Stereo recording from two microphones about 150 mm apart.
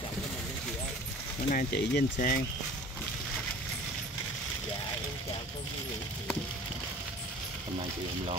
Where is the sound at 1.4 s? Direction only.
80° left.